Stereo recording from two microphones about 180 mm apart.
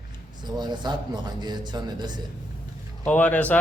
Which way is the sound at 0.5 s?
25° right (ahead or behind).